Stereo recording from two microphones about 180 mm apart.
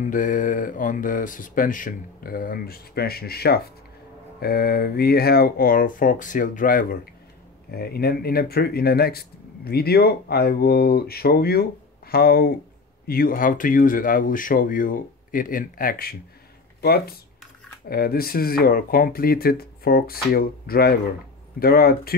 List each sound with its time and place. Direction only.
0.0 s speech: 45° left (ahead or behind)